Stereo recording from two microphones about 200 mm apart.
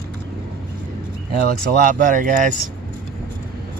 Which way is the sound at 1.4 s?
45° right (ahead or behind).